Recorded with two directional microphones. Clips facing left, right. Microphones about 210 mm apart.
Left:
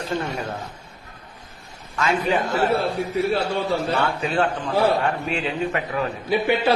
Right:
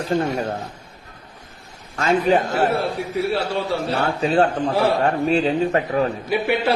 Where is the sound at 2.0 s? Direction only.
40° right (ahead or behind).